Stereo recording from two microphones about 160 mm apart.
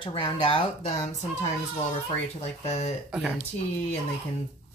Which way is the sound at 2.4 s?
45° left (ahead or behind).